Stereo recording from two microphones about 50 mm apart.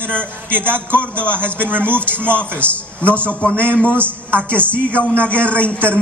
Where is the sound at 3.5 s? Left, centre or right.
Right.